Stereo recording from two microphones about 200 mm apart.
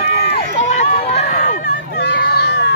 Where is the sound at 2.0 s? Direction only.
55° left (ahead or behind).